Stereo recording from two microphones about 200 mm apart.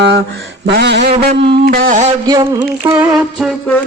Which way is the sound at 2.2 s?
20° right (ahead or behind).